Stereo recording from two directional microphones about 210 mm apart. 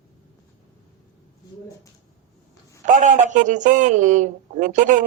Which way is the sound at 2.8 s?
40° right (ahead or behind).